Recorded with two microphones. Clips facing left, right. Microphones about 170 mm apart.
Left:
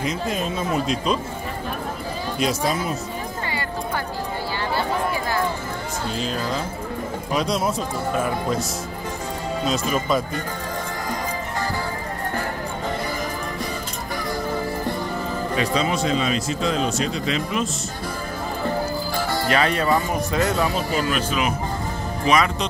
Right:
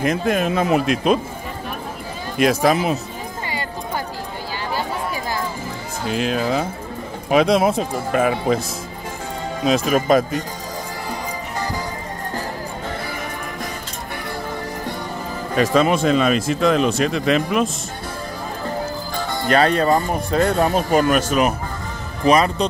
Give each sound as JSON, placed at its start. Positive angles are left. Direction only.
{"t": 0.0, "sound": "speech", "side_deg": -60}
{"t": 2.3, "sound": "speech", "side_deg": -65}
{"t": 6.2, "sound": "speech", "side_deg": -65}
{"t": 9.7, "sound": "speech", "side_deg": -60}
{"t": 15.5, "sound": "speech", "side_deg": -50}
{"t": 19.5, "sound": "speech", "side_deg": -35}
{"t": 22.2, "sound": "speech", "side_deg": -35}